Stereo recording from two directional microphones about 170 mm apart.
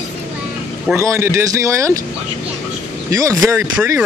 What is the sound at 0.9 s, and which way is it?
Speech, 15° right (ahead or behind).